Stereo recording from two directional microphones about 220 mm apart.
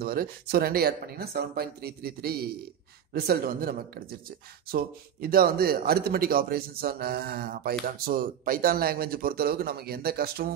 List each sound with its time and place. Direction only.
0.0 s speech: 40° right (ahead or behind)